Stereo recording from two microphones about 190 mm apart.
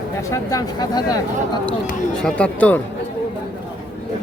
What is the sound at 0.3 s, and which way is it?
Speech, 20° left (ahead or behind).